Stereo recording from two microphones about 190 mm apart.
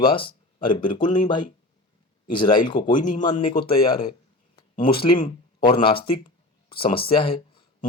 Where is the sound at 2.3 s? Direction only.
25° left (ahead or behind).